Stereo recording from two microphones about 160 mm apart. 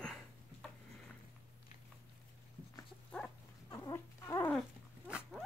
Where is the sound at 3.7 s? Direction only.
20° left (ahead or behind).